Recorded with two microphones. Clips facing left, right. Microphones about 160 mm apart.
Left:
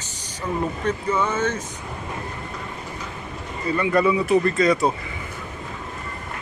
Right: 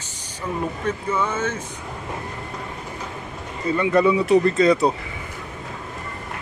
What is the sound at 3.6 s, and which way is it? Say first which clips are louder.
Speech: right 2 dB; 20° right (ahead or behind).